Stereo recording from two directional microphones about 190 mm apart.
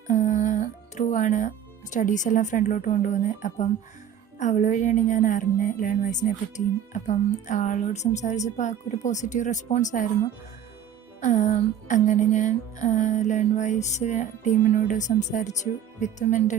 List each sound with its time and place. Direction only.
0.1 s speech: 40° left (ahead or behind)
4.4 s music: 40° left (ahead or behind)
11.2 s music: 40° left (ahead or behind)